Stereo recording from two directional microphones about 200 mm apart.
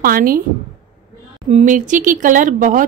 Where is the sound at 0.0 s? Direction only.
45° right (ahead or behind).